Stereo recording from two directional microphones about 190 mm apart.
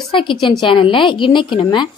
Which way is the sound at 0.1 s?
25° left (ahead or behind).